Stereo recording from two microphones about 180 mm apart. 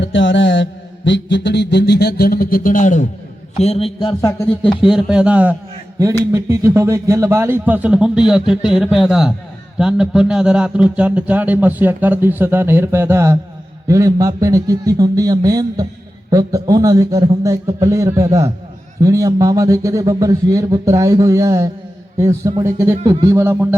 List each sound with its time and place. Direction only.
0.0 s mantra: 90° left; by 3.1 s 45° left (ahead or behind)
3.6 s a man's voice: 35° left (ahead or behind)
4.2 s speech: 15° left (ahead or behind)
4.8 s a man's voice: centre (ahead or behind)